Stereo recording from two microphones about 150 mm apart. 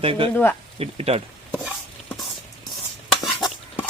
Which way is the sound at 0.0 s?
40° right (ahead or behind).